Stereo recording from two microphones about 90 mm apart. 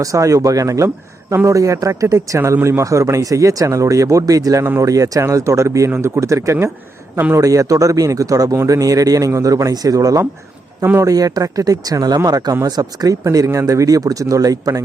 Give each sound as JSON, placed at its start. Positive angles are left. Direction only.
{"t": 0.0, "sound": "a man's voice", "side_deg": -35}
{"t": 7.4, "sound": "speech", "side_deg": -40}